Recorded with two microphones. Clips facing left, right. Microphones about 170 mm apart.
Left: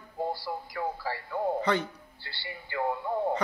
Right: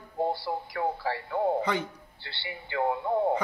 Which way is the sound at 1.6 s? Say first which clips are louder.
Left 2 dB; 10° right (ahead or behind).